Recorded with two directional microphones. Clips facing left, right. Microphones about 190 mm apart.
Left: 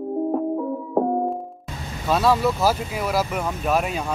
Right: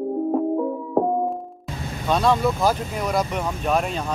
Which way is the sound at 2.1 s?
5° left (ahead or behind).